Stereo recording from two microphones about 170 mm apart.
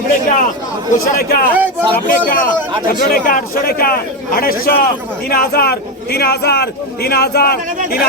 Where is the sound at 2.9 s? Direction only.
55° left (ahead or behind).